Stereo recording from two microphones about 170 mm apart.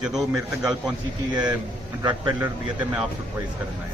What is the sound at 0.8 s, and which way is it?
Speech, 25° right (ahead or behind).